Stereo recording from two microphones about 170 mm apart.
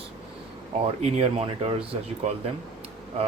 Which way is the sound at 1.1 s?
35° right (ahead or behind).